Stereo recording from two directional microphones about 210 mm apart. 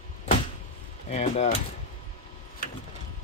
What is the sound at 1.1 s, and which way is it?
Speech, 30° left (ahead or behind).